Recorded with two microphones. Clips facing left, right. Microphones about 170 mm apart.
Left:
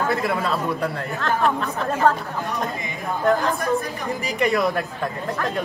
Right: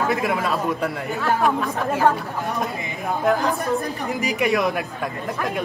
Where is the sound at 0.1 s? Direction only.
15° right (ahead or behind).